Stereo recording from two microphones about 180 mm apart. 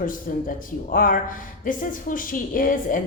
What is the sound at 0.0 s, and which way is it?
Speech, 50° left (ahead or behind).